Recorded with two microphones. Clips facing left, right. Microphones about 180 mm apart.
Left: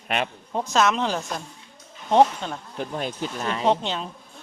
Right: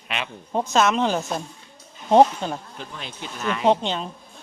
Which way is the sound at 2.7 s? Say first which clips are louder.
Left 8 dB; 50° left (ahead or behind).